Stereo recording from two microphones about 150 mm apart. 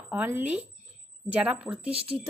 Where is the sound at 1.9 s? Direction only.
40° right (ahead or behind).